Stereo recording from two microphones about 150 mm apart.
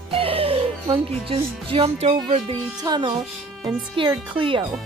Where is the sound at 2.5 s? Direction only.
30° right (ahead or behind).